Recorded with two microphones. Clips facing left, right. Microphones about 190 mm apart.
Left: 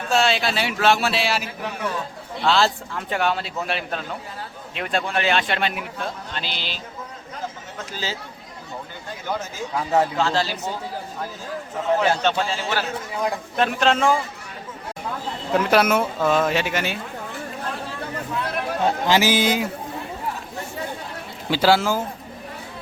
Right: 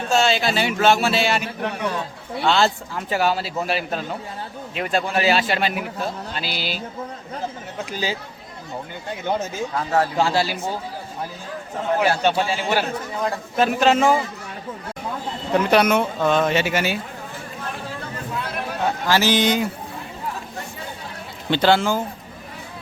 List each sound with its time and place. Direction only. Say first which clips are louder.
0.1 s a man's voice: right 1 dB; centre (ahead or behind)
7.9 s a man's voice: right 4 dB; 15° right (ahead or behind)
9.7 s speech: left 1 dB; 15° left (ahead or behind)
10.2 s a man's voice: right 2 dB; 10° right (ahead or behind)
11.9 s a man's voice: right 2 dB; 10° right (ahead or behind)
13.6 s a man's voice: right 3 dB; centre (ahead or behind)
15.5 s a man's voice: right 1 dB; centre (ahead or behind)
19.0 s speech: even; 15° left (ahead or behind)
19.3 s a man's voice: right 1 dB; 5° left (ahead or behind)
21.5 s a man's voice: right 1 dB; 5° left (ahead or behind)